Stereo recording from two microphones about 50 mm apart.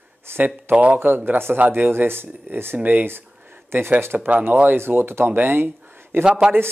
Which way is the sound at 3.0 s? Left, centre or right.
Right.